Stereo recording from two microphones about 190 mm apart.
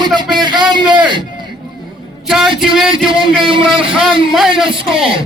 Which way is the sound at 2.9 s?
25° right (ahead or behind).